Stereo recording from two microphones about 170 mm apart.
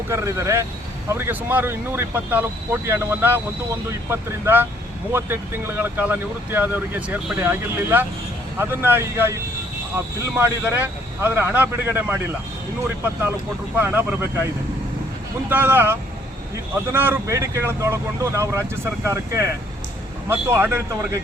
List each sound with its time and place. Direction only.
0.1 s speech: 20° right (ahead or behind)
13.7 s speech: 10° right (ahead or behind)
15.4 s speech: 10° right (ahead or behind)